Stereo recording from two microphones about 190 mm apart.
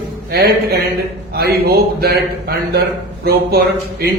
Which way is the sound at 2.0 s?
55° right (ahead or behind).